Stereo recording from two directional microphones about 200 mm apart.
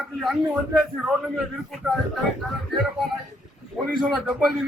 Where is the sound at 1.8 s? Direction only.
Centre (ahead or behind).